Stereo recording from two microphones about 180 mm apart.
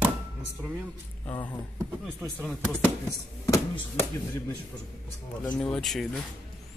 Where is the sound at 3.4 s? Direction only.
15° left (ahead or behind).